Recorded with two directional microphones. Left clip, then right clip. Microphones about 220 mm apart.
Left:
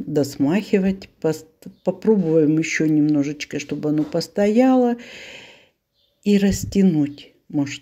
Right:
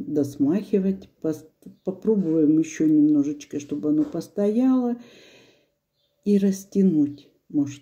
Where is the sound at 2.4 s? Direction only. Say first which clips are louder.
Left 3 dB; 20° left (ahead or behind).